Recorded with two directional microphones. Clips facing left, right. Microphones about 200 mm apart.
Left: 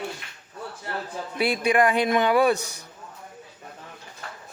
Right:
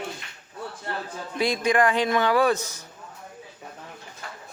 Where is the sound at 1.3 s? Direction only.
10° left (ahead or behind).